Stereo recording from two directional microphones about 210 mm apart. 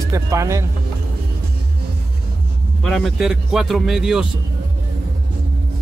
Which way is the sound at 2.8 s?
Centre (ahead or behind).